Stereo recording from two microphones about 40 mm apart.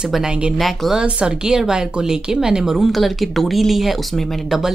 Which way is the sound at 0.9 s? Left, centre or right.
Right.